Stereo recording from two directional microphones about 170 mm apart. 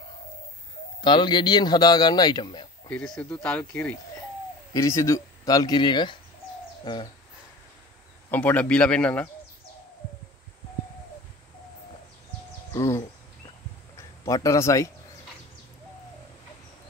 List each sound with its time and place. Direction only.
1.0 s a man's voice: 25° left (ahead or behind)
2.9 s a man's voice: 5° left (ahead or behind); by 6.1 s 25° left (ahead or behind)
6.8 s bird: 30° left (ahead or behind)
8.3 s speech: 10° left (ahead or behind)
12.7 s a man's voice: 15° left (ahead or behind)